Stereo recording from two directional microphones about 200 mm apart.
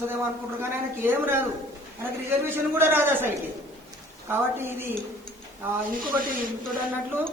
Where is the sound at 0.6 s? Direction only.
10° right (ahead or behind).